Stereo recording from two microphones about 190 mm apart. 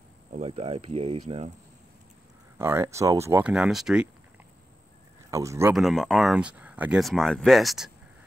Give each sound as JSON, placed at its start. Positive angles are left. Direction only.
{"t": 0.3, "sound": "speech", "side_deg": -35}
{"t": 2.6, "sound": "speech", "side_deg": -15}
{"t": 5.3, "sound": "speech", "side_deg": -15}
{"t": 5.8, "sound": "speech", "side_deg": 0}